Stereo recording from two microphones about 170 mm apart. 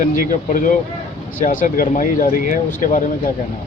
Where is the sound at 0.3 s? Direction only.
50° left (ahead or behind).